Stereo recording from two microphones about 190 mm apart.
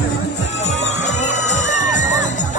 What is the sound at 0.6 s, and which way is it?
Music, 35° left (ahead or behind).